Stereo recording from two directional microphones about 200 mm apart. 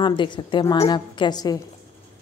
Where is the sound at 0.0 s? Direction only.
25° left (ahead or behind).